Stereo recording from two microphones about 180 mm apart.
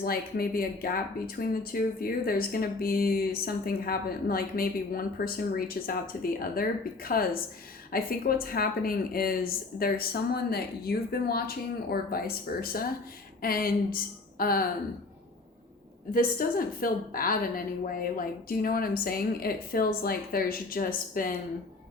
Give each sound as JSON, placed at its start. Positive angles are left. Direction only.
{"t": 0.0, "sound": "speech", "side_deg": 55}
{"t": 16.1, "sound": "a woman's voice", "side_deg": 55}